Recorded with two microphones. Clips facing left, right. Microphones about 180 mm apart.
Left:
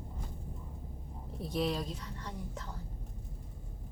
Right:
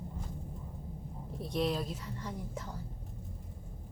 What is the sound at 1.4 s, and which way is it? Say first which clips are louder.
Speech: right 1 dB; centre (ahead or behind).